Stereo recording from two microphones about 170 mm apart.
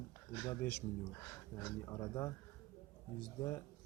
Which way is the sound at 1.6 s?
20° left (ahead or behind).